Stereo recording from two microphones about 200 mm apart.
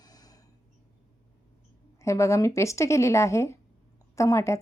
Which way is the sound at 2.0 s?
15° left (ahead or behind).